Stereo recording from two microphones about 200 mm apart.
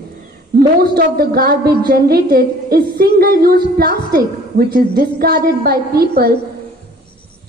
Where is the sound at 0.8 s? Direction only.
50° right (ahead or behind).